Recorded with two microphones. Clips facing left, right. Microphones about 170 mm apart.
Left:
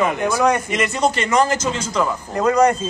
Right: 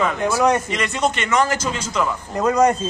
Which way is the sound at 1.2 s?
35° left (ahead or behind).